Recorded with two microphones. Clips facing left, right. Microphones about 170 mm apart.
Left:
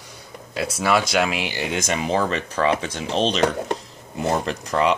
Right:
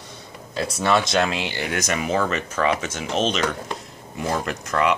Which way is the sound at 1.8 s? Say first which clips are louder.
Left 1 dB; 30° left (ahead or behind).